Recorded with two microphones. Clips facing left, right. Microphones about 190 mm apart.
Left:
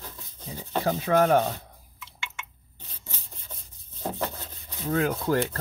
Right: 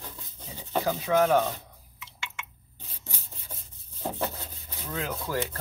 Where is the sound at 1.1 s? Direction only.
50° left (ahead or behind).